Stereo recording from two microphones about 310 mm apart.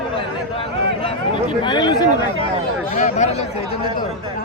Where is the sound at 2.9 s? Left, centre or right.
Left.